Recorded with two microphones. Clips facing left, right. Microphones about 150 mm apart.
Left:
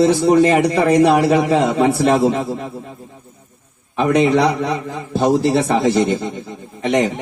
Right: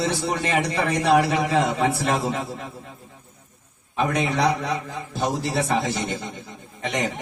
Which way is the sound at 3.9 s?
70° left (ahead or behind).